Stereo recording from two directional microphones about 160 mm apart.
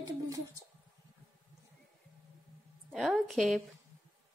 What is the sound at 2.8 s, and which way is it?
Speech, centre (ahead or behind).